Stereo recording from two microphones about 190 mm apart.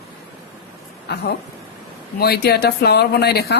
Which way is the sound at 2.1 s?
55° left (ahead or behind).